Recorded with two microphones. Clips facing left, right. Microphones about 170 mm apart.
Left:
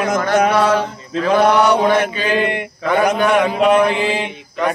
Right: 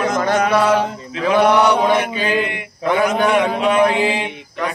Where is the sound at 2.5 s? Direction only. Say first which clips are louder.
Left 1 dB; 50° left (ahead or behind).